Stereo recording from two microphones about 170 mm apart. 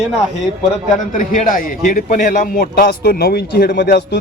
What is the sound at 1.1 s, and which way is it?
A man's voice, 50° left (ahead or behind).